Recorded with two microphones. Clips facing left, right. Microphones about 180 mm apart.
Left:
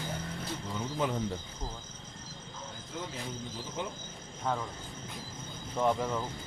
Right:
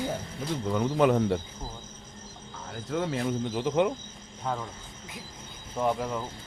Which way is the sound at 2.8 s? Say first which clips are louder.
Right 12 dB; 70° right (ahead or behind).